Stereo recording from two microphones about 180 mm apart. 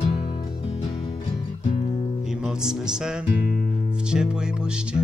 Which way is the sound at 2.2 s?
5° right (ahead or behind).